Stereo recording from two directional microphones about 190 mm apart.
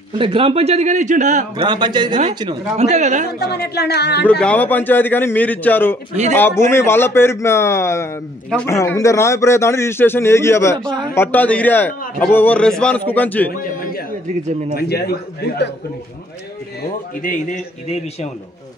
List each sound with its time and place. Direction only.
0.2 s speech: 30° right (ahead or behind)
1.6 s speech: 25° right (ahead or behind)
2.8 s speech: 35° right (ahead or behind)
3.3 s speech: 60° left (ahead or behind)
4.3 s a man's voice: 5° left (ahead or behind)
13.6 s a sound: 50° left (ahead or behind)
14.8 s speech: 55° left (ahead or behind)
17.2 s a man's voice: 45° left (ahead or behind)